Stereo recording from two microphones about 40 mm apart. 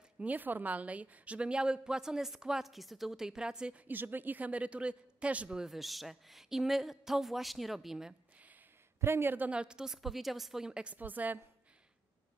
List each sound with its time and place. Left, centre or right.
0.2 s a woman's voice: right; by 3.7 s centre
3.9 s a woman's voice: right
5.7 s speech: centre
9.0 s speech: right
9.5 s a woman's voice: right; by 10.7 s centre
10.7 s a woman's voice: right
11.0 s a woman's voice: right